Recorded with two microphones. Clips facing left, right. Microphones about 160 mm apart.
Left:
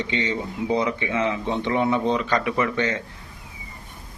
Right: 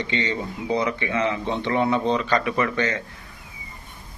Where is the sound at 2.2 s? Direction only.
15° left (ahead or behind).